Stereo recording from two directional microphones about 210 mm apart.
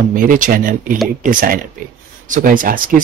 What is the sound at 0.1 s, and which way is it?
Speech, 40° right (ahead or behind).